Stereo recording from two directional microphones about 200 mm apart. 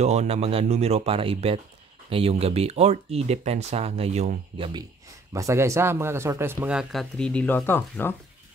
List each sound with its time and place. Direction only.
0.0 s speech: 35° right (ahead or behind)
5.3 s speech: 15° right (ahead or behind); by 8.2 s 10° left (ahead or behind)